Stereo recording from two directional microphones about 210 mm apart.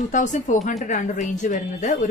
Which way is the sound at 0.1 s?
35° left (ahead or behind).